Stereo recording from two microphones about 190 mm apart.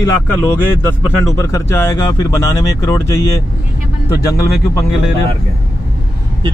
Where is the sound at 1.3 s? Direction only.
15° left (ahead or behind).